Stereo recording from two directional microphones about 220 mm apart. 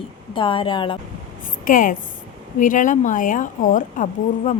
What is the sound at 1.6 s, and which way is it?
Speech, 40° left (ahead or behind).